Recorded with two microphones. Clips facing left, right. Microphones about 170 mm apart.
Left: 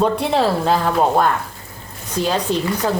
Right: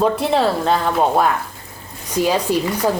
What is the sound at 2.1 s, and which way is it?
Speech, 10° right (ahead or behind).